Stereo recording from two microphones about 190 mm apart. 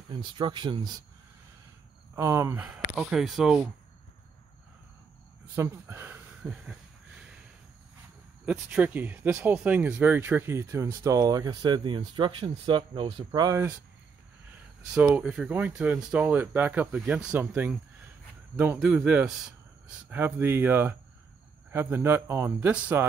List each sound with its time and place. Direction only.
0.1 s speech: 25° right (ahead or behind)
2.1 s speech: 15° right (ahead or behind)
2.9 s speech: centre (ahead or behind)
5.6 s speech: 10° right (ahead or behind)
8.5 s speech: 10° right (ahead or behind)
15.0 s speech: 5° right (ahead or behind)